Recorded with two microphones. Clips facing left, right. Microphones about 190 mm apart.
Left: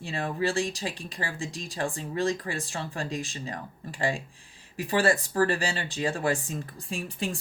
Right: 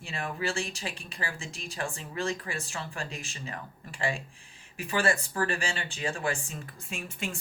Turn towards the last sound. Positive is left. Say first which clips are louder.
# left 4 dB
turn(degrees=35)  # may be behind; listen again after turning